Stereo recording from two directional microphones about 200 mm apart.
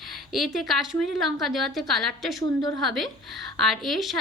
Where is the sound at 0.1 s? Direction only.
Centre (ahead or behind).